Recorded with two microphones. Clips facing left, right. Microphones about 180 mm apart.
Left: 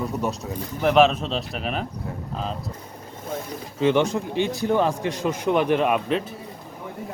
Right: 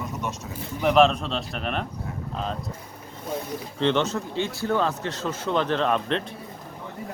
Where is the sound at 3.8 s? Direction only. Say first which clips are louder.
Left 3 dB; 10° left (ahead or behind).